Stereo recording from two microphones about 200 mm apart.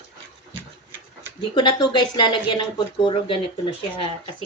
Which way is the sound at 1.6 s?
20° left (ahead or behind).